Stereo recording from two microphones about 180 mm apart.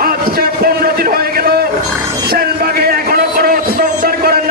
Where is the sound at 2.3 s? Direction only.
55° right (ahead or behind).